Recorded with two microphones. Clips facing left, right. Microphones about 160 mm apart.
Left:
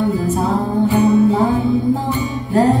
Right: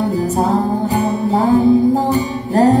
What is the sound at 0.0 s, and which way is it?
Music, 40° right (ahead or behind).